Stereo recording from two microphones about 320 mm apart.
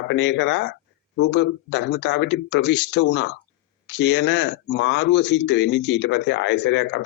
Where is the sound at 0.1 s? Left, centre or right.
Left.